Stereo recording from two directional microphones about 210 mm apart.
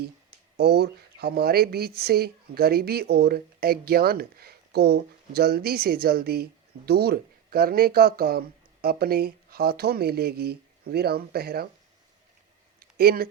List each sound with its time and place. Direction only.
0.5 s speech: 50° right (ahead or behind)
12.8 s speech: 45° right (ahead or behind)